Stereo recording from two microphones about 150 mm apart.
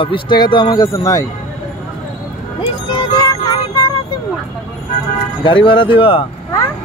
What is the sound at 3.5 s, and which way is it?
Music, 30° left (ahead or behind).